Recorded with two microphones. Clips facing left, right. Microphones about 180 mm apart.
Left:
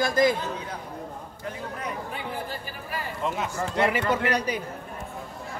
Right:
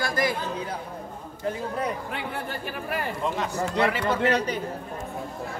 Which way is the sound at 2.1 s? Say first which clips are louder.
Right 1 dB; 65° right (ahead or behind).